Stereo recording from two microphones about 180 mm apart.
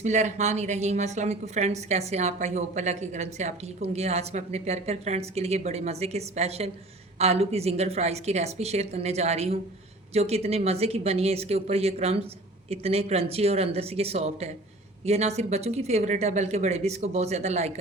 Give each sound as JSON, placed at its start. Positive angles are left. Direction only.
{"t": 0.0, "sound": "a woman's voice", "side_deg": -40}